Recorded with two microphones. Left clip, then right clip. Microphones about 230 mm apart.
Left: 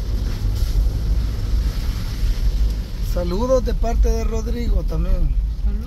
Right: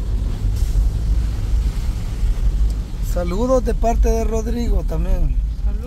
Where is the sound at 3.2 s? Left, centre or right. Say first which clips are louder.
Right 1 dB; centre.